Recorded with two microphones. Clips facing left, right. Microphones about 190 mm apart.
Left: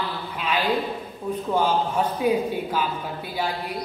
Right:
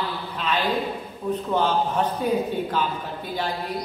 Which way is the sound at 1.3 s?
10° left (ahead or behind).